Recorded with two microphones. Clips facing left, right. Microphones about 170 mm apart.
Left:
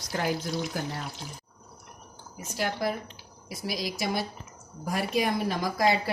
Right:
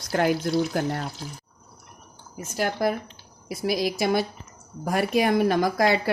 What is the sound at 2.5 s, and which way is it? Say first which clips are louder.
Speech: right 5 dB; 50° right (ahead or behind).